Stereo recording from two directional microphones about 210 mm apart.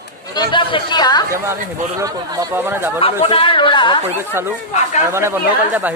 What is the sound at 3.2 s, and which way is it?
Speech, 25° left (ahead or behind).